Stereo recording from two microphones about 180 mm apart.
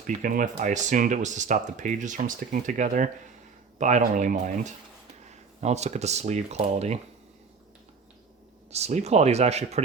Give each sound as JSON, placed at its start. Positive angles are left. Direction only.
{"t": 0.2, "sound": "speech", "side_deg": -50}
{"t": 8.7, "sound": "speech", "side_deg": -40}